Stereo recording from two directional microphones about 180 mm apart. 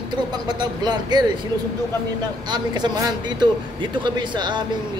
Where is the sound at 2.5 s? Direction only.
25° right (ahead or behind).